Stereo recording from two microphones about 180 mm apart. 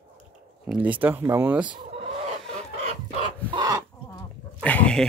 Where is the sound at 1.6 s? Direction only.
25° right (ahead or behind).